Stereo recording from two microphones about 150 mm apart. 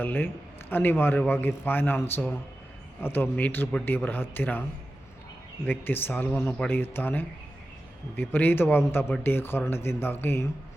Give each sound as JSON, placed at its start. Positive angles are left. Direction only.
{"t": 0.0, "sound": "a man's voice", "side_deg": 10}
{"t": 5.6, "sound": "a man's voice", "side_deg": 15}